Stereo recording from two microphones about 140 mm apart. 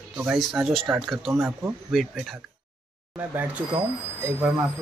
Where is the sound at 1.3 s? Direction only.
15° right (ahead or behind).